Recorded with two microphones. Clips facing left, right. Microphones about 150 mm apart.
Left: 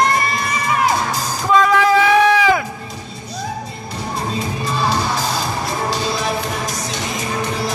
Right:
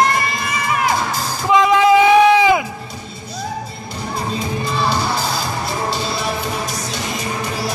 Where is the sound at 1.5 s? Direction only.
20° right (ahead or behind).